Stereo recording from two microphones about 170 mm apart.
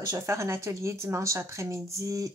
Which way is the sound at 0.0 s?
20° right (ahead or behind).